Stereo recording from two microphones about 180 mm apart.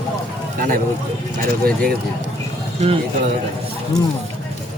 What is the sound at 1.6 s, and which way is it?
Speech, 55° right (ahead or behind).